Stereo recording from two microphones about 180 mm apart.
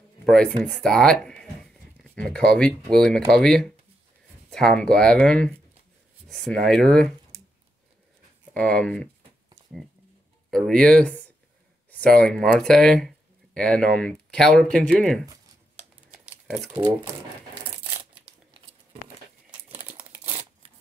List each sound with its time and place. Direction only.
0.2 s speech: 5° left (ahead or behind)
8.5 s speech: 5° left (ahead or behind)
10.5 s speech: 5° left (ahead or behind)
16.8 s speech: 25° right (ahead or behind)
19.9 s crumpling: 10° right (ahead or behind)